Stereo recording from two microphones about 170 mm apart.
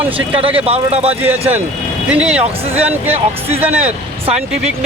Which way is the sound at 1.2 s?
10° right (ahead or behind).